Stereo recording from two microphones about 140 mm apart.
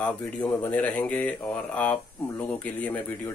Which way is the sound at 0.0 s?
10° left (ahead or behind).